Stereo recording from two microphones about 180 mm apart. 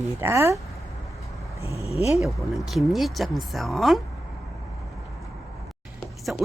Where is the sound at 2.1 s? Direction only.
Centre (ahead or behind).